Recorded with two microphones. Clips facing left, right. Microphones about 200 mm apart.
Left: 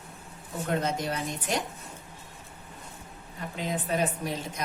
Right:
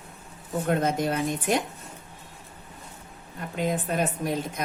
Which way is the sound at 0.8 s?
55° right (ahead or behind).